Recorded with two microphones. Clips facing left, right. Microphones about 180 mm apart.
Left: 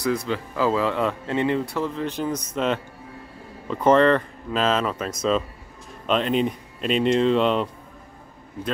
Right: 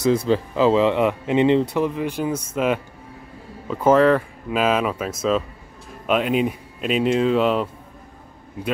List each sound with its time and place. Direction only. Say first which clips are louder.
0.0 s speech: right 6 dB; 30° right (ahead or behind); by 7.7 s 5° right (ahead or behind)